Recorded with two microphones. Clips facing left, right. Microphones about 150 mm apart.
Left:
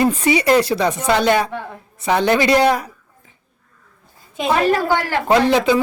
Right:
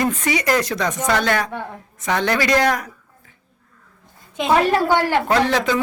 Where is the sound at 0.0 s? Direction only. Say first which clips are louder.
Left 4 dB; 30° left (ahead or behind).